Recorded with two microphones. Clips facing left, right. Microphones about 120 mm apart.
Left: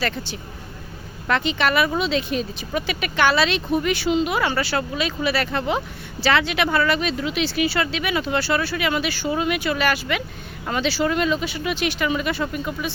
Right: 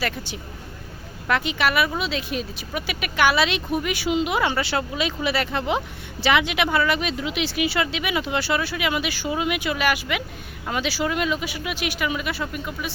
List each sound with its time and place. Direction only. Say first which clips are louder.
0.0 s speech: left 2 dB; 10° right (ahead or behind)